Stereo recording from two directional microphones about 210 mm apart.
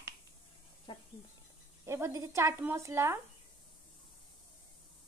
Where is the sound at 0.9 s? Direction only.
20° left (ahead or behind).